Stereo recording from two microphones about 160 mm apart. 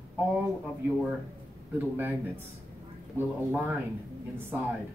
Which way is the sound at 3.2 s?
10° right (ahead or behind).